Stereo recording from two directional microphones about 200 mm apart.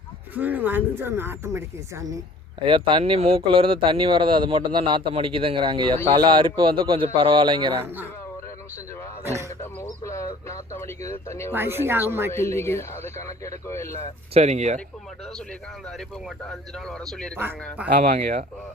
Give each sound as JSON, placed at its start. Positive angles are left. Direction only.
{"t": 0.3, "sound": "speech", "side_deg": -10}
{"t": 2.6, "sound": "a man's voice", "side_deg": -25}
{"t": 9.6, "sound": "a sound", "side_deg": 15}
{"t": 11.5, "sound": "speech", "side_deg": -10}
{"t": 12.3, "sound": "speech", "side_deg": 15}
{"t": 14.3, "sound": "speech", "side_deg": -35}
{"t": 15.9, "sound": "speech", "side_deg": 0}
{"t": 18.0, "sound": "speech", "side_deg": -40}